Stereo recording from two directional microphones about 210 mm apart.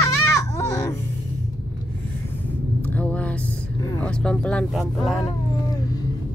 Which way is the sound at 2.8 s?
5° left (ahead or behind).